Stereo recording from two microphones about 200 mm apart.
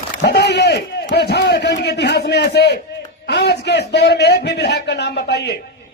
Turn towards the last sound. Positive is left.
turn(degrees=55)  # may be behind; listen again after turning